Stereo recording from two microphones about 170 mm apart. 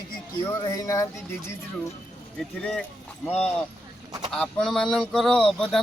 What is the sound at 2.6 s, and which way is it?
Speech, 5° left (ahead or behind).